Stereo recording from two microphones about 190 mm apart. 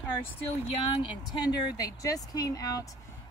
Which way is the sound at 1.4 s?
20° left (ahead or behind).